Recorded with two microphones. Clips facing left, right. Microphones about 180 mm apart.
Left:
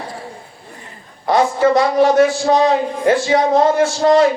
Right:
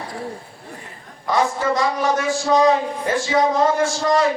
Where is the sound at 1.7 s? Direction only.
65° left (ahead or behind).